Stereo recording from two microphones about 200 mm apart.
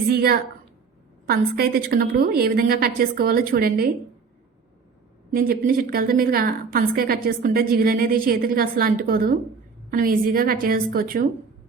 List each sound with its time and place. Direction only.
0.1 s a woman's voice: 50° right (ahead or behind)
5.3 s a woman's voice: 45° right (ahead or behind)